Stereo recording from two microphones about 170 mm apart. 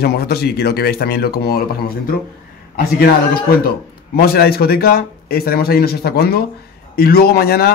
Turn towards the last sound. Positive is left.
turn(degrees=65)  # may be behind; listen again after turning